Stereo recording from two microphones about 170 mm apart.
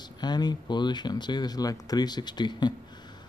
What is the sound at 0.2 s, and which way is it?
Speech, 25° left (ahead or behind).